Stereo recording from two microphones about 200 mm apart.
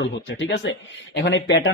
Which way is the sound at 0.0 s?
65° left (ahead or behind).